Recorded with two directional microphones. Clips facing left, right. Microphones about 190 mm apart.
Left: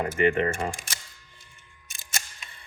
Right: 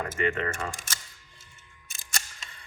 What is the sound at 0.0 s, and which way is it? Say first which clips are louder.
Speech: left 6 dB; 15° left (ahead or behind).